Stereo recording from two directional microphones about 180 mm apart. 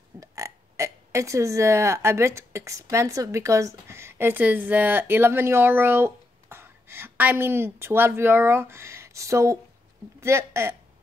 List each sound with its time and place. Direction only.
0.2 s speech: 15° right (ahead or behind)